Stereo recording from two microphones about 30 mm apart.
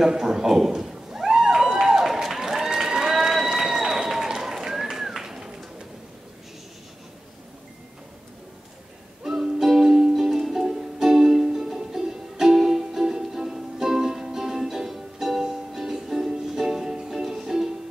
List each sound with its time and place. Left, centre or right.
0.0 s a sound: centre
2.2 s run: centre
9.2 s music: centre